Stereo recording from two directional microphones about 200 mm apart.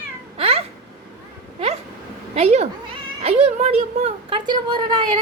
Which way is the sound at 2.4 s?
35° right (ahead or behind).